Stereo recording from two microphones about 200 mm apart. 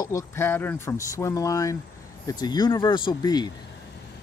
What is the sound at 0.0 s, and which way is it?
Speech, 15° left (ahead or behind).